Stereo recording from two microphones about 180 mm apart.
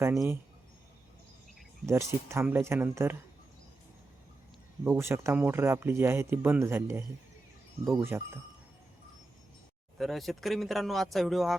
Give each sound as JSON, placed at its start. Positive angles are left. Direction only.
{"t": 0.0, "sound": "speech", "side_deg": -15}
{"t": 1.9, "sound": "speech", "side_deg": -15}
{"t": 4.8, "sound": "speech", "side_deg": -15}
{"t": 10.0, "sound": "a man's voice", "side_deg": 0}